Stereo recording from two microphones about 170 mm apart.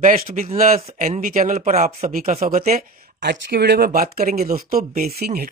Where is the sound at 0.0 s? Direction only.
50° right (ahead or behind).